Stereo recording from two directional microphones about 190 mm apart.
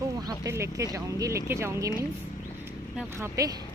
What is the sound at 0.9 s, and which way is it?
Speech, 15° right (ahead or behind).